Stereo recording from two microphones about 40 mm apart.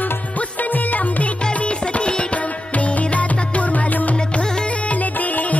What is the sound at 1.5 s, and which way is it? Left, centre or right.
Music, left.